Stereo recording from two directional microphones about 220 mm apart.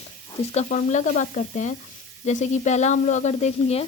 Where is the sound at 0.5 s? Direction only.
35° left (ahead or behind).